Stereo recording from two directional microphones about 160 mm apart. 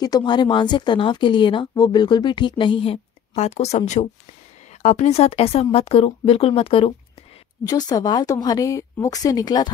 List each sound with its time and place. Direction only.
0.0 s speech: 25° left (ahead or behind)
7.6 s speech: 25° left (ahead or behind)